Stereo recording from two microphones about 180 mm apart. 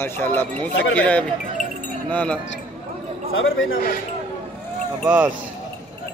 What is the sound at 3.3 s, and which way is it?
Speech, 90° left.